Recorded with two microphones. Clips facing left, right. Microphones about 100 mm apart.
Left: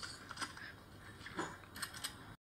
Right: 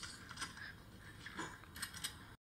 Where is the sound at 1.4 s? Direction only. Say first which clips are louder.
Left 3 dB; 45° left (ahead or behind).